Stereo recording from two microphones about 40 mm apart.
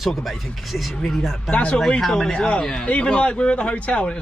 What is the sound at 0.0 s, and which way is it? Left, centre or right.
Speech, centre.